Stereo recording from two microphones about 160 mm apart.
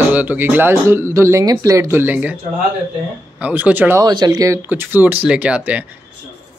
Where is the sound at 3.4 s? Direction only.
10° right (ahead or behind).